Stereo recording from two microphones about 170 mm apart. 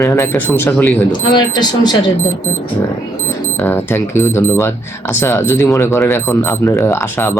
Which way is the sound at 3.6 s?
15° left (ahead or behind).